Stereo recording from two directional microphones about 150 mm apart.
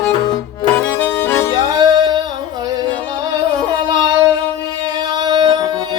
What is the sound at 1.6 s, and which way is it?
Music, 25° right (ahead or behind).